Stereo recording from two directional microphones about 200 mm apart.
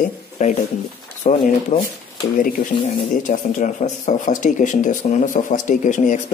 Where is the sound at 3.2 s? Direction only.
40° left (ahead or behind).